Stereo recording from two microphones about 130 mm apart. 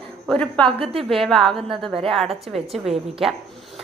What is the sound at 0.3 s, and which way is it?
A woman's voice, 10° left (ahead or behind).